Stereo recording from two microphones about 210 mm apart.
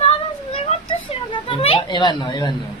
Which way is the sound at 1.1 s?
30° left (ahead or behind).